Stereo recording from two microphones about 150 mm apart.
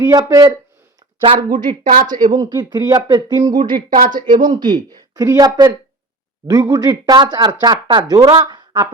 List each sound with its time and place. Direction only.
0.0 s speech: 25° right (ahead or behind)
1.8 s a woman's voice: 65° right (ahead or behind)
2.1 s speech: 25° right (ahead or behind)
4.0 s a woman's voice: 60° right (ahead or behind)
4.6 s speech: 30° right (ahead or behind)